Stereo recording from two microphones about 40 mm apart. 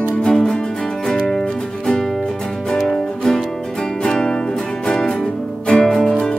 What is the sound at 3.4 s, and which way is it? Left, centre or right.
Music, centre.